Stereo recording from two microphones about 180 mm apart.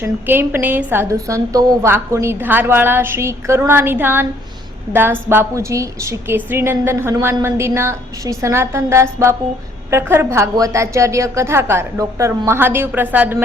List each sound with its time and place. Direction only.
0.0 s a woman's voice: 10° right (ahead or behind)